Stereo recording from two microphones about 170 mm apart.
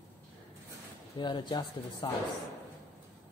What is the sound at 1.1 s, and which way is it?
Speech, 25° left (ahead or behind).